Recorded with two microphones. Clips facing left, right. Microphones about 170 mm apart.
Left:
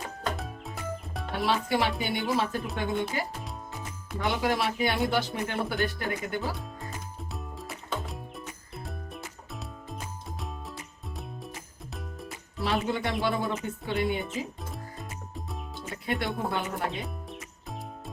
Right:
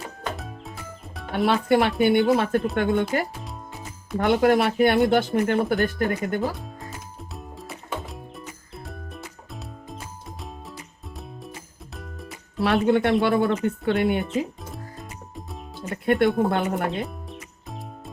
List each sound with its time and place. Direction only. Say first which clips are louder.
0.3 s music: right 1 dB; centre (ahead or behind)
1.5 s speech: right 7 dB; 60° right (ahead or behind)
3.3 s music: right 1 dB; centre (ahead or behind)
4.2 s speech: right 9 dB; 55° right (ahead or behind)
6.6 s music: right 1 dB; centre (ahead or behind)
12.5 s speech: right 9 dB; 70° right (ahead or behind)
14.6 s music: right 2 dB; centre (ahead or behind)
15.9 s speech: right 11 dB; 55° right (ahead or behind)
16.9 s music: right 6 dB; centre (ahead or behind)